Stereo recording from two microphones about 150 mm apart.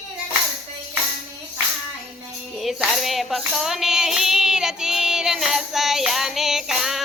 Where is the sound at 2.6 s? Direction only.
Centre (ahead or behind).